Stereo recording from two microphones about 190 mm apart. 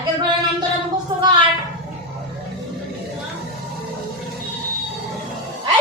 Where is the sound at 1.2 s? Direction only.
25° right (ahead or behind).